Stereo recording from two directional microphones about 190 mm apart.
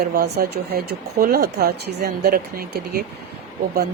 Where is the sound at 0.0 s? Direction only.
55° right (ahead or behind).